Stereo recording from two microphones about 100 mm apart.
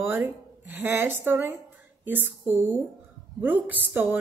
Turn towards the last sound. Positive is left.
turn(degrees=-15)  # may be behind; listen again after turning